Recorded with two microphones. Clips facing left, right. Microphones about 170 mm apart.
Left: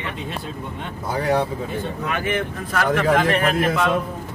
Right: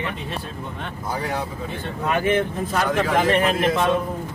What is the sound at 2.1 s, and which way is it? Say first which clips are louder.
Speech: right 6 dB; 30° right (ahead or behind).